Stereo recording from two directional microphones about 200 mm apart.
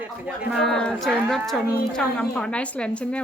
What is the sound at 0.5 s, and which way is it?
Speech, centre (ahead or behind).